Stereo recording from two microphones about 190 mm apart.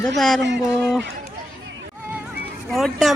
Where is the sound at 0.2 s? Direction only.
Centre (ahead or behind).